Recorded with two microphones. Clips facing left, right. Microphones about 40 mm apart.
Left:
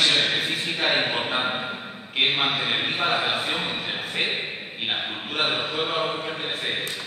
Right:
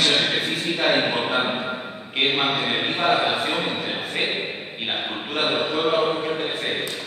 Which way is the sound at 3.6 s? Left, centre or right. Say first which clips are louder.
Right 3 dB; centre.